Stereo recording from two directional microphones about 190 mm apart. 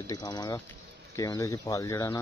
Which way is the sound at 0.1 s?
20° left (ahead or behind).